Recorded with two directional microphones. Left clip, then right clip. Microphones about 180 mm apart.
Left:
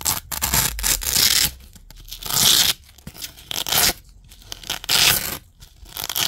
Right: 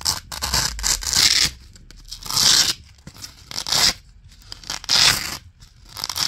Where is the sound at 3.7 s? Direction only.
40° left (ahead or behind).